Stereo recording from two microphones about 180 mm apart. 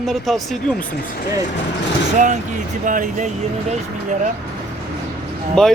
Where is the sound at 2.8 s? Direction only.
45° right (ahead or behind).